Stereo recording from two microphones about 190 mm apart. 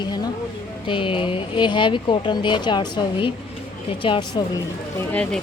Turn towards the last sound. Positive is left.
turn(degrees=5)  # may be behind; listen again after turning